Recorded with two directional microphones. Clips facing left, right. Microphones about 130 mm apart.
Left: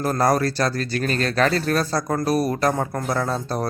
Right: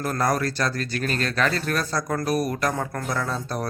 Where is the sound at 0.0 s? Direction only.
35° left (ahead or behind).